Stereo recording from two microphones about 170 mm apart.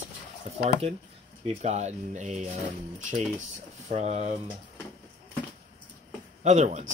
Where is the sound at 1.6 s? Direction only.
40° right (ahead or behind).